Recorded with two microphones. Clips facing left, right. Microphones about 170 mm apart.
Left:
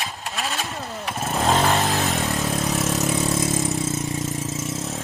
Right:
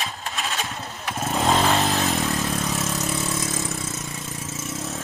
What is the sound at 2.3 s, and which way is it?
Vehicle, 20° left (ahead or behind).